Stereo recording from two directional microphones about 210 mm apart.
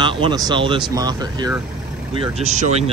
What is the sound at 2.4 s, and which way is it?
Speech, 35° right (ahead or behind).